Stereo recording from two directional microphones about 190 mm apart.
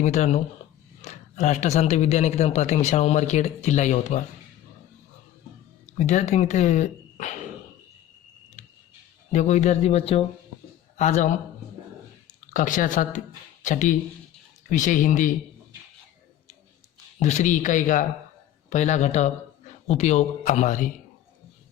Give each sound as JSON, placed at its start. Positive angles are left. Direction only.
{"t": 0.0, "sound": "speech", "side_deg": 40}
{"t": 5.8, "sound": "speech", "side_deg": 40}
{"t": 9.3, "sound": "a man's voice", "side_deg": 35}
{"t": 12.5, "sound": "a woman's voice", "side_deg": 45}
{"t": 17.2, "sound": "speech", "side_deg": 40}